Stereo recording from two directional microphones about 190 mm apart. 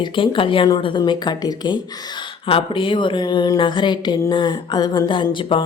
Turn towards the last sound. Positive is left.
turn(degrees=25)  # may be behind; listen again after turning